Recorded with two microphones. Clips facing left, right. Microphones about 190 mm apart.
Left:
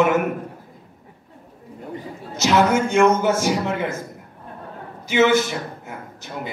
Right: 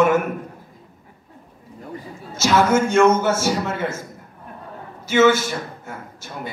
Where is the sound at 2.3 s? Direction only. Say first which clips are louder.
Even; 15° left (ahead or behind).